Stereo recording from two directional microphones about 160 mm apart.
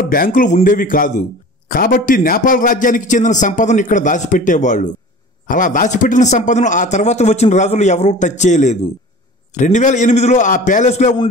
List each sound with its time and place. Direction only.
0.1 s a man's voice: 60° left (ahead or behind)